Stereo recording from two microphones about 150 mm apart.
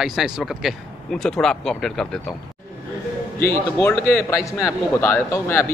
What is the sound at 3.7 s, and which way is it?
A man's voice, 20° left (ahead or behind).